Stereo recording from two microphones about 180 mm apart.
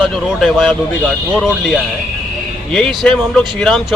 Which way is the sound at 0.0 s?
Centre (ahead or behind).